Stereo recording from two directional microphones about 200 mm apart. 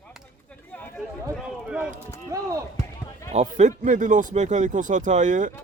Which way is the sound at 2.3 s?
15° right (ahead or behind).